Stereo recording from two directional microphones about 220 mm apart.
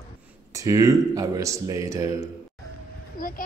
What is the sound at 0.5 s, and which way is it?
Speech, 15° right (ahead or behind).